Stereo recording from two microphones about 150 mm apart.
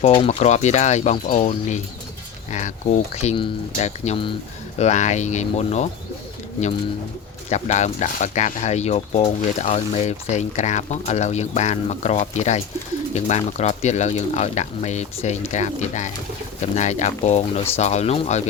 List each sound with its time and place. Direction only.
0.1 s speech: 40° left (ahead or behind)
7.5 s speech: 50° left (ahead or behind)